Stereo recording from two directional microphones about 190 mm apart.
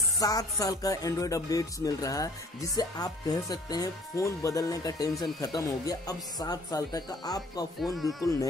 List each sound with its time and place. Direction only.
0.2 s speech: 20° left (ahead or behind)
7.8 s speech: centre (ahead or behind)
8.2 s insect: 15° left (ahead or behind)